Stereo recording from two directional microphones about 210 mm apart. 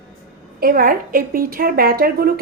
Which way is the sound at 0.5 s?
45° right (ahead or behind).